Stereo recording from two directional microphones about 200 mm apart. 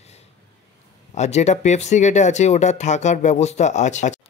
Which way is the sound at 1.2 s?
35° left (ahead or behind).